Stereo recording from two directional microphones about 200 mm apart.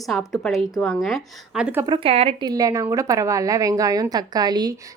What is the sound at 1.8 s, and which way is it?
Speech, 25° right (ahead or behind).